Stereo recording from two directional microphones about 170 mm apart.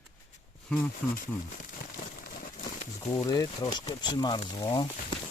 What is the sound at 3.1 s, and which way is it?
Speech, 25° left (ahead or behind).